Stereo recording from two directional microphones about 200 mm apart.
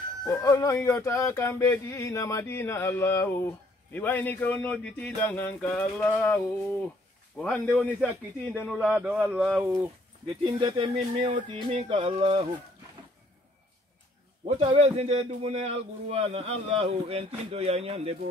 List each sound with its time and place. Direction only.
0.3 s a sound: 15° left (ahead or behind)
8.5 s a man's voice: 5° left (ahead or behind)
10.4 s a man's voice: 25° right (ahead or behind)
14.4 s a man's voice: 30° right (ahead or behind)